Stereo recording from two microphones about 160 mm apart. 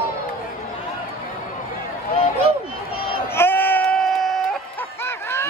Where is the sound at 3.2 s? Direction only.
15° left (ahead or behind).